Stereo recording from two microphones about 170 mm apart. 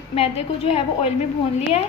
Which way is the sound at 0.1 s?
35° left (ahead or behind).